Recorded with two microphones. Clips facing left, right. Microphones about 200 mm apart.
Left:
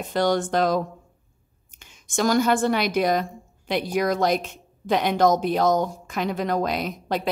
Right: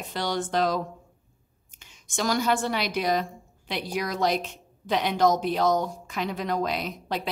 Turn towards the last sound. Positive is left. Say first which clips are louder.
# left 4 dB
turn(degrees=50)  # may be behind; listen again after turning